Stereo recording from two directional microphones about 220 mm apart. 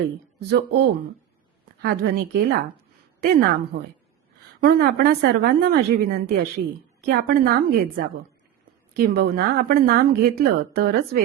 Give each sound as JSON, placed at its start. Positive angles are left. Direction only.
{"t": 0.3, "sound": "a woman's voice", "side_deg": -50}
{"t": 4.6, "sound": "a woman's voice", "side_deg": -45}